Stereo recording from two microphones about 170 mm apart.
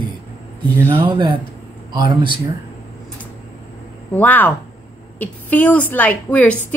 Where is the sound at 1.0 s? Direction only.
25° right (ahead or behind).